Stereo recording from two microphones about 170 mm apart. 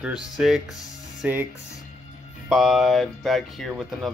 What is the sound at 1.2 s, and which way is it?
Speech, 10° right (ahead or behind).